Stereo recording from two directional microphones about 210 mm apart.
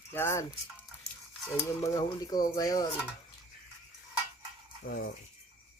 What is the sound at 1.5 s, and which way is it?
Speech, 15° left (ahead or behind).